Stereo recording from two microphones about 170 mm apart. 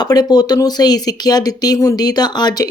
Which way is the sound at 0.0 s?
25° left (ahead or behind).